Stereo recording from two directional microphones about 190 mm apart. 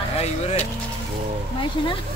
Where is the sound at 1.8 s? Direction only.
25° left (ahead or behind).